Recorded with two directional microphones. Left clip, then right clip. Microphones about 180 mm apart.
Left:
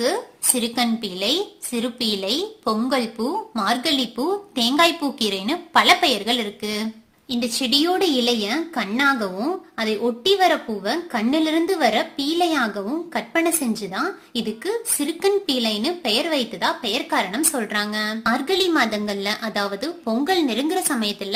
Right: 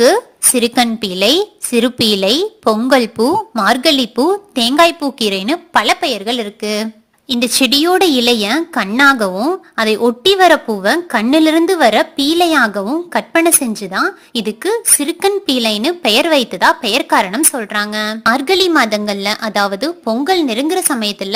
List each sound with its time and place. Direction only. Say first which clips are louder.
0.0 s a woman's voice: right 12 dB; 45° right (ahead or behind)